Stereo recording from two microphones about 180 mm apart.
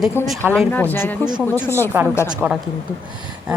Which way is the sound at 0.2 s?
15° left (ahead or behind).